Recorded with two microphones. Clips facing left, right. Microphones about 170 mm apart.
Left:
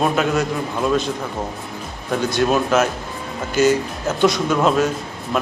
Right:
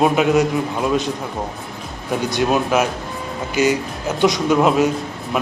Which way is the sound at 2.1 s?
15° right (ahead or behind).